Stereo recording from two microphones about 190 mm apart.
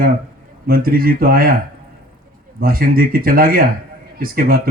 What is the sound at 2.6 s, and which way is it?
A man's voice, 50° right (ahead or behind).